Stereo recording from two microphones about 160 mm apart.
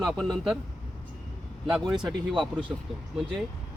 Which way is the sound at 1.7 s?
5° right (ahead or behind).